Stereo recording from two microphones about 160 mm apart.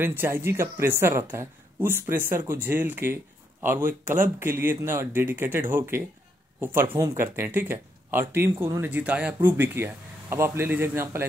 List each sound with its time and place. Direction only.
0.0 s speech: 15° right (ahead or behind)